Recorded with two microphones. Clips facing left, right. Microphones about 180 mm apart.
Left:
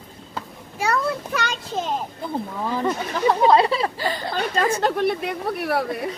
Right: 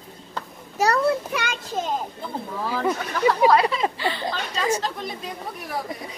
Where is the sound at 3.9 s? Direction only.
40° left (ahead or behind).